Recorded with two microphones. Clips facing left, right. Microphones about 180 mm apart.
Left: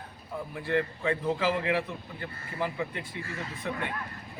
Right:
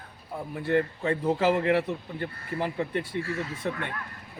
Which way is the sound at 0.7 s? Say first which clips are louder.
Right 2 dB; 40° right (ahead or behind).